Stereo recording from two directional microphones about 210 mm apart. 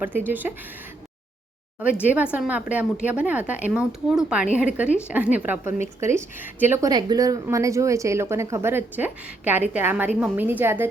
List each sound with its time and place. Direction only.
0.0 s a woman's voice: 10° right (ahead or behind)
1.8 s a woman's voice: 5° right (ahead or behind)